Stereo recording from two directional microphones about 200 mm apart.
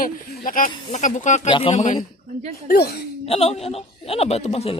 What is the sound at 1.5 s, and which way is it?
Speech, 25° left (ahead or behind).